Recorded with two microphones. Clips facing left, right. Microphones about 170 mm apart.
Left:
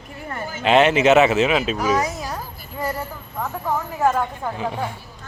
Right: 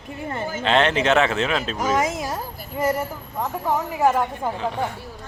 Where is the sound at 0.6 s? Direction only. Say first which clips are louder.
Left 5 dB; 10° left (ahead or behind).